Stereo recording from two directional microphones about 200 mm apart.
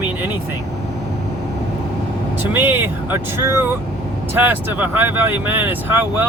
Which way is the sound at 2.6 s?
10° right (ahead or behind).